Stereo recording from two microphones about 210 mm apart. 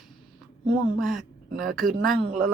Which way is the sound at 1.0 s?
Centre (ahead or behind).